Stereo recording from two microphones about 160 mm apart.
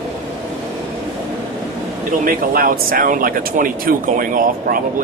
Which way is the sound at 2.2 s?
65° right (ahead or behind).